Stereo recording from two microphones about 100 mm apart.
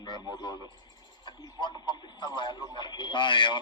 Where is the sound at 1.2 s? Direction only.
50° left (ahead or behind).